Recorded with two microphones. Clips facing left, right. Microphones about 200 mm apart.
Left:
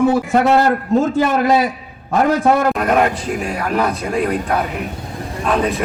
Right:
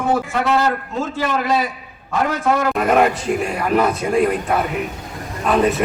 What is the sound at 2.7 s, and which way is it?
A man's voice, centre (ahead or behind).